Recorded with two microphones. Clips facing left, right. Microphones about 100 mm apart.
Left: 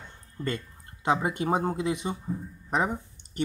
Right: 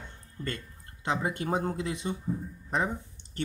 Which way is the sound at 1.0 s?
15° left (ahead or behind).